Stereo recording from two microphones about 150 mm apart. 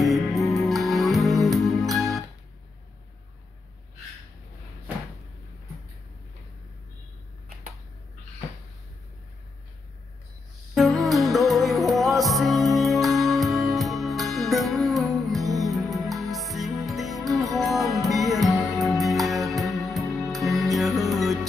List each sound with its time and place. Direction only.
0.0 s music: centre (ahead or behind)
10.7 s music: centre (ahead or behind)